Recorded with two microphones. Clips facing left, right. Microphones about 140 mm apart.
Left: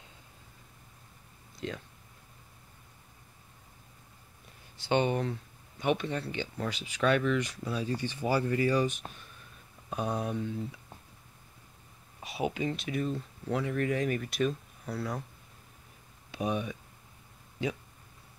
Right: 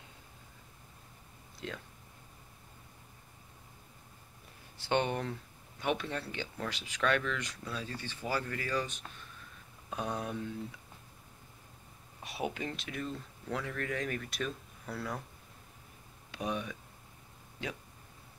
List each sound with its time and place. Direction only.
1.6 s speech: centre (ahead or behind)
4.7 s speech: centre (ahead or behind); by 8.8 s 20° left (ahead or behind)
9.0 s speech: 30° left (ahead or behind)
9.9 s speech: 5° left (ahead or behind)
12.2 s speech: centre (ahead or behind)
16.3 s speech: 5° left (ahead or behind)